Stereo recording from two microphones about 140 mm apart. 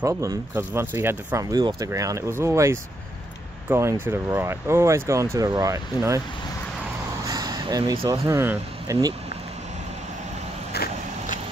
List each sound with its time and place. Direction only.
0.0 s speech: 20° right (ahead or behind)
7.2 s a sound: 30° right (ahead or behind)
8.3 s speech: 20° right (ahead or behind)